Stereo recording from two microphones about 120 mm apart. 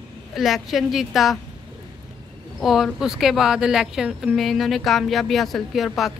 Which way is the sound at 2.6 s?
5° right (ahead or behind).